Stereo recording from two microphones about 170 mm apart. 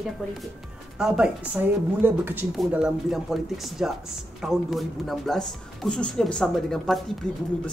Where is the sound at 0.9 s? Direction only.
5° right (ahead or behind).